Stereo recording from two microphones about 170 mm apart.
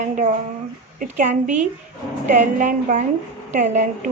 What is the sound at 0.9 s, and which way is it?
Speech, 50° right (ahead or behind).